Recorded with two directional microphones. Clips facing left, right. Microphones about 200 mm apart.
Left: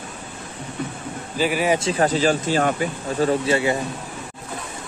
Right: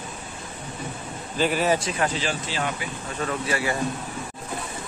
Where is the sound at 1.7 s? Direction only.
30° left (ahead or behind); by 2.9 s 45° left (ahead or behind).